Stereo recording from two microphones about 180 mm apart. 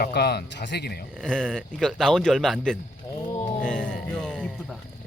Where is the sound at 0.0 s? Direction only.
65° left (ahead or behind).